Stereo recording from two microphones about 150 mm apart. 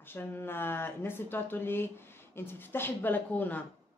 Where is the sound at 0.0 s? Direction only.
15° left (ahead or behind).